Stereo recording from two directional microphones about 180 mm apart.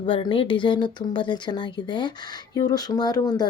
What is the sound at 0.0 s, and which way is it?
Speech, 30° left (ahead or behind).